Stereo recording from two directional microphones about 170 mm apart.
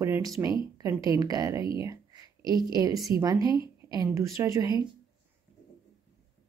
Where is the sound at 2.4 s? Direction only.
25° left (ahead or behind).